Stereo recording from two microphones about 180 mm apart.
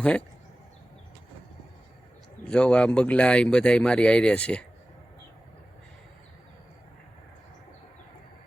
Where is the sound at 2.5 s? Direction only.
5° left (ahead or behind).